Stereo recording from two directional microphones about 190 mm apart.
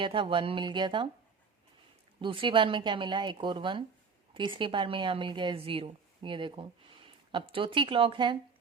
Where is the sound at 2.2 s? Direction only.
25° right (ahead or behind).